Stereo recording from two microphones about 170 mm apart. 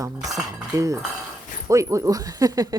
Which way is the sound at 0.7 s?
20° right (ahead or behind).